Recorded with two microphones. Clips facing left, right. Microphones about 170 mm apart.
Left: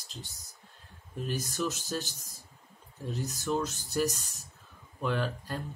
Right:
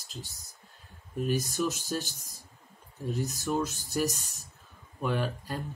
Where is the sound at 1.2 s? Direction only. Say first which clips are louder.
Right 4 dB; 10° right (ahead or behind).